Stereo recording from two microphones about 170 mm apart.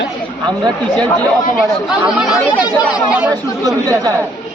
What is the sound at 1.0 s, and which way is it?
Speech, 5° left (ahead or behind).